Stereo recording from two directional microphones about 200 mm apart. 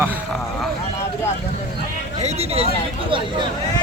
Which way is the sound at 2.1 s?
30° right (ahead or behind).